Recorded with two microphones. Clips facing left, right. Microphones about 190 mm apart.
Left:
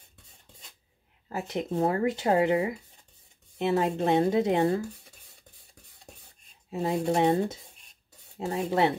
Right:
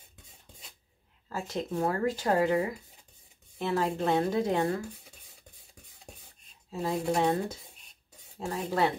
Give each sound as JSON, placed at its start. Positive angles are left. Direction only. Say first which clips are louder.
{"t": 1.3, "sound": "speech", "louder": "left 3 dB", "side_deg": 20}
{"t": 6.7, "sound": "speech", "louder": "left 3 dB", "side_deg": 25}